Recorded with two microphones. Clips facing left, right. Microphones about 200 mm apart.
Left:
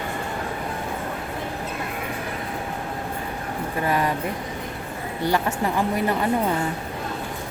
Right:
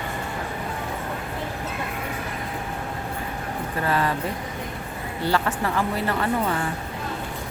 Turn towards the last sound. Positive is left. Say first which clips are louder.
# left 2 dB
turn(degrees=15)  # may be behind; listen again after turning